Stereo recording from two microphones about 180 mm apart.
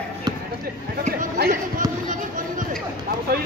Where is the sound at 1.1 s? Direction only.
55° right (ahead or behind).